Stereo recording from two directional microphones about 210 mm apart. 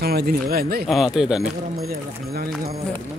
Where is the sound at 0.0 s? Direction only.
50° right (ahead or behind).